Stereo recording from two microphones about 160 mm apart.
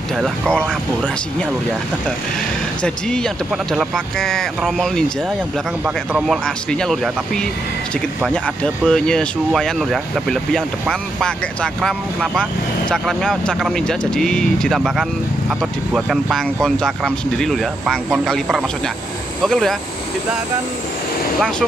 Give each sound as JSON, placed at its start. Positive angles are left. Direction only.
{"t": 0.2, "sound": "speech", "side_deg": 5}
{"t": 2.8, "sound": "speech", "side_deg": 5}
{"t": 8.8, "sound": "speech", "side_deg": 5}